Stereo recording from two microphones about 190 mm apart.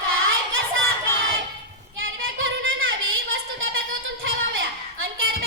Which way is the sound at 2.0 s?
90° right.